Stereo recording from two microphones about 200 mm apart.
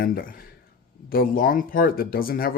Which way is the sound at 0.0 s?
45° left (ahead or behind).